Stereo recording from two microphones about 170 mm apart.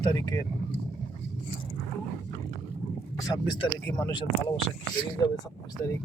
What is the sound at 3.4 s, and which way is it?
Speech, 30° left (ahead or behind).